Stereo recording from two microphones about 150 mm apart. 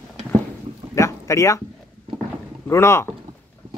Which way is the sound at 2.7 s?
20° left (ahead or behind).